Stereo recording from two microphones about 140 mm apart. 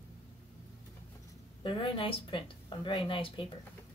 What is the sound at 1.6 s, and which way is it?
A woman's voice, 35° left (ahead or behind).